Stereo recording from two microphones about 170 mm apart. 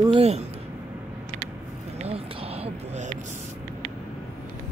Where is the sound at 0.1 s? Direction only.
40° right (ahead or behind).